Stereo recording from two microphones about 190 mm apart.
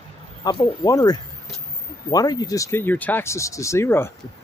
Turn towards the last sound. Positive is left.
turn(degrees=15)  # may be behind; listen again after turning